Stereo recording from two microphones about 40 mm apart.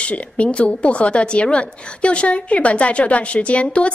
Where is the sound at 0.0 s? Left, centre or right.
Left.